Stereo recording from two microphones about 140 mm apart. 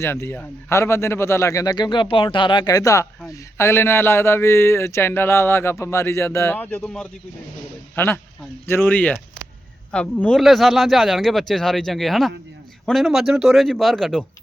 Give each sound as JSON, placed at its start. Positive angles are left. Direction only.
{"t": 0.0, "sound": "speech", "side_deg": 15}
{"t": 7.9, "sound": "speech", "side_deg": 15}